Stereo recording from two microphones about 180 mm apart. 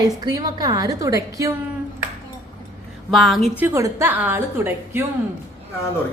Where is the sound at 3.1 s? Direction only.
Centre (ahead or behind).